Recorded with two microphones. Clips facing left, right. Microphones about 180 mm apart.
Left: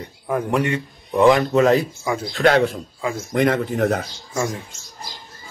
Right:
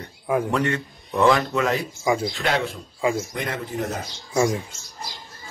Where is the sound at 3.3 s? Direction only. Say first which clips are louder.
Left 9 dB; 60° left (ahead or behind).